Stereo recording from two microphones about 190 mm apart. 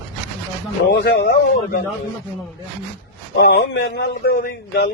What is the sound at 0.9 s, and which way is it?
Speech, 65° left (ahead or behind).